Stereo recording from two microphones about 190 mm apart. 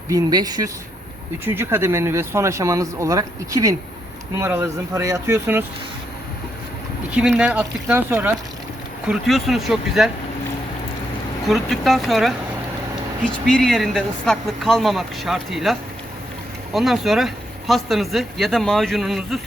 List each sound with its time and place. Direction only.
0.1 s speech: 20° right (ahead or behind)
7.2 s speech: 5° right (ahead or behind)
11.4 s speech: centre (ahead or behind)